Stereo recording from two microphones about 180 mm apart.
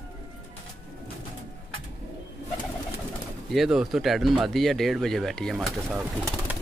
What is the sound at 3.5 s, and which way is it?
Speech, centre (ahead or behind).